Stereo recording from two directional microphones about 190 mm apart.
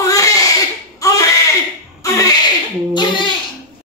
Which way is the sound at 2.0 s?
20° left (ahead or behind).